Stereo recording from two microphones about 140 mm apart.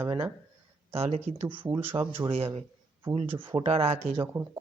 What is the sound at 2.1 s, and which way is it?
Speech, 40° right (ahead or behind).